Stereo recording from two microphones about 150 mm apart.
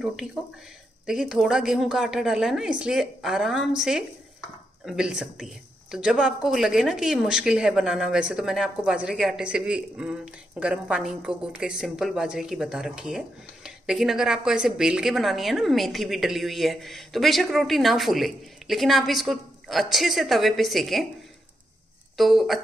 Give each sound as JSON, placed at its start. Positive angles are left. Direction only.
{"t": 0.0, "sound": "speech", "side_deg": 0}
{"t": 22.1, "sound": "speech", "side_deg": 0}